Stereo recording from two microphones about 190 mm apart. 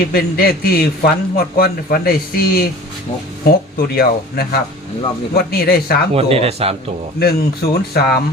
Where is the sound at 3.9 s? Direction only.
55° left (ahead or behind).